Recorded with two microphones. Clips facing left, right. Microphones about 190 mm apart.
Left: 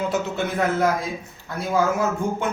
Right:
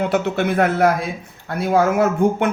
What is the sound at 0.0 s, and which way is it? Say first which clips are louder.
A man's voice: right 5 dB; 65° right (ahead or behind).